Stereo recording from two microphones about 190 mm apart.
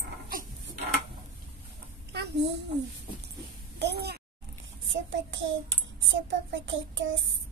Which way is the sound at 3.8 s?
60° right (ahead or behind).